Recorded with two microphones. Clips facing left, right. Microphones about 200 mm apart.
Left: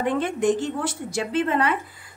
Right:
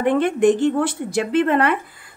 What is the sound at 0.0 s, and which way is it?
A woman's voice, 60° right (ahead or behind).